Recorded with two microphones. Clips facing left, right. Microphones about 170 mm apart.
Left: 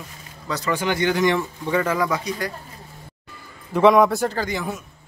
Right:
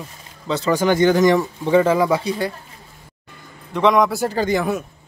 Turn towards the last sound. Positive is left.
turn(degrees=-60)  # may be behind; listen again after turning